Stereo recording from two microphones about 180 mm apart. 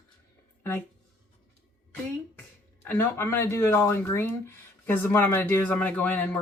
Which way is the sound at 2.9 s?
15° left (ahead or behind).